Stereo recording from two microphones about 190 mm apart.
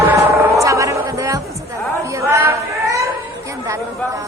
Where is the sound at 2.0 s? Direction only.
15° right (ahead or behind).